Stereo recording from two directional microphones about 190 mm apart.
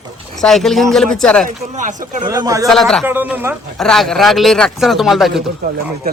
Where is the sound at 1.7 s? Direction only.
40° right (ahead or behind).